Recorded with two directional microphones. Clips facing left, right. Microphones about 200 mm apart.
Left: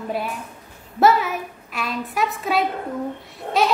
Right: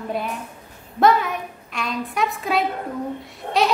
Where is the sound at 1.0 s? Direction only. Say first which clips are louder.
Even; 5° left (ahead or behind).